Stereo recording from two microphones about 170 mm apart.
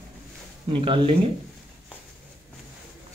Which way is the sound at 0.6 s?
30° right (ahead or behind).